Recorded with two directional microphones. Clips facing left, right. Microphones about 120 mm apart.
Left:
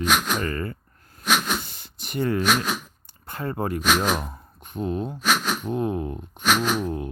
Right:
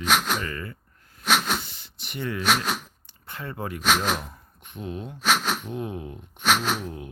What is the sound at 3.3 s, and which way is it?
Speech, 45° left (ahead or behind).